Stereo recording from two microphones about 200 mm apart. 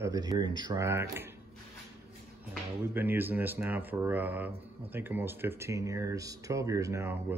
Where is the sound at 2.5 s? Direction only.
10° right (ahead or behind).